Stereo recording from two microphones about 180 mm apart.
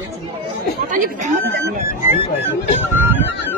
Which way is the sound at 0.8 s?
45° right (ahead or behind).